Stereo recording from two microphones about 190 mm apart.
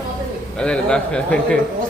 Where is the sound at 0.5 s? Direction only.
5° left (ahead or behind).